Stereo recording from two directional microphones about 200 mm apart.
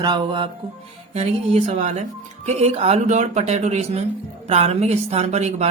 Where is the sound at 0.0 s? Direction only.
20° right (ahead or behind).